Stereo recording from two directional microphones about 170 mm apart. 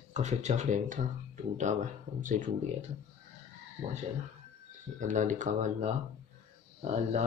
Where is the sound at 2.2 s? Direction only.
50° right (ahead or behind).